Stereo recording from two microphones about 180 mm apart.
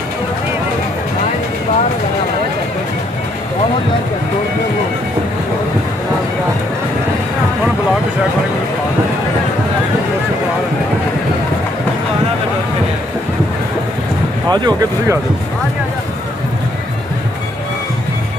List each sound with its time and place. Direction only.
14.5 s speech: 25° right (ahead or behind)